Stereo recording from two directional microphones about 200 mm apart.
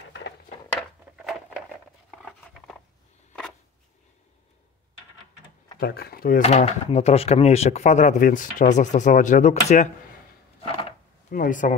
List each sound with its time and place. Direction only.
2.0 s patter: centre (ahead or behind)
5.8 s speech: 50° left (ahead or behind)
6.4 s speech: 30° left (ahead or behind)
11.2 s speech: 40° left (ahead or behind)